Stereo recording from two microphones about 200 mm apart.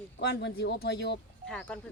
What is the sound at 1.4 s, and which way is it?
Speech, 5° left (ahead or behind).